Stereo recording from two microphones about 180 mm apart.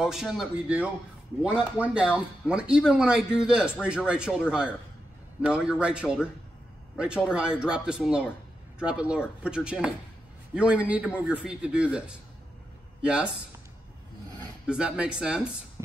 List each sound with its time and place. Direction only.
0.0 s speech: centre (ahead or behind)
14.7 s speech: 5° right (ahead or behind)